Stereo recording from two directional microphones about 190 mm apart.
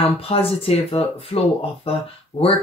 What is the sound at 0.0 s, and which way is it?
Speech, 30° left (ahead or behind).